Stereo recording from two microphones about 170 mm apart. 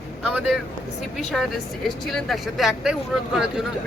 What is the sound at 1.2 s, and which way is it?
Speech, centre (ahead or behind).